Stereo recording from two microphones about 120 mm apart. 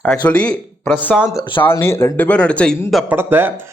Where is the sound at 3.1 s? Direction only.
20° right (ahead or behind).